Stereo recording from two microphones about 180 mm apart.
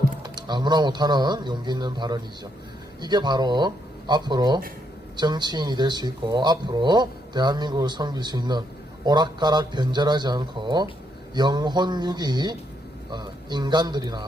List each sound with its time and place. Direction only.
0.2 s speech: 25° right (ahead or behind)